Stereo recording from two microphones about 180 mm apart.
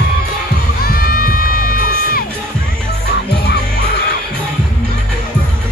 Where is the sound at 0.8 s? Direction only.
55° left (ahead or behind).